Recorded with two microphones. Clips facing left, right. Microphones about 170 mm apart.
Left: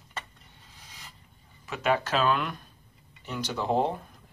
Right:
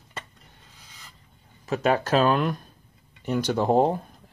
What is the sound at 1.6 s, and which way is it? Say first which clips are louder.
Speech: right 4 dB; 40° right (ahead or behind).